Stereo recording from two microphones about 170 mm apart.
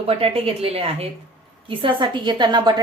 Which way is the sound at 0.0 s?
35° right (ahead or behind).